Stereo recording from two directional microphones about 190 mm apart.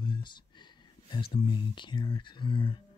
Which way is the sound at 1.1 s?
25° left (ahead or behind).